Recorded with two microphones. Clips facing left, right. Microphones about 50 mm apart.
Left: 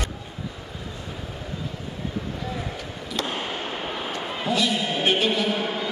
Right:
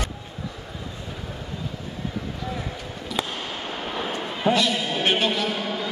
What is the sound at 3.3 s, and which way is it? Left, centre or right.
Fireworks, centre.